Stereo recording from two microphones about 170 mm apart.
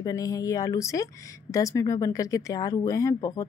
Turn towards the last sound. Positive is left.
turn(degrees=20)  # may be behind; listen again after turning